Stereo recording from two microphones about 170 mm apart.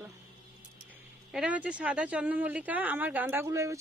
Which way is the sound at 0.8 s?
5° right (ahead or behind).